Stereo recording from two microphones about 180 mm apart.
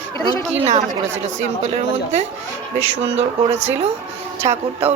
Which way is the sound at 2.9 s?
40° right (ahead or behind).